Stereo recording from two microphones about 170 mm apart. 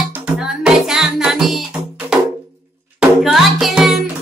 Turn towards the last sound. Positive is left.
turn(degrees=0)  # may be behind; listen again after turning